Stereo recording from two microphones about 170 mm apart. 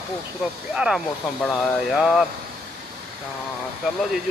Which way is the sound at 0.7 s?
5° right (ahead or behind).